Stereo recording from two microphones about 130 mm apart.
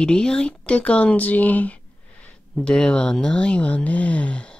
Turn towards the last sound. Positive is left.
turn(degrees=10)  # may be behind; listen again after turning